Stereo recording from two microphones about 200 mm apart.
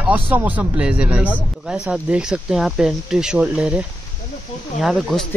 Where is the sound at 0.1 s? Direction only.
10° right (ahead or behind).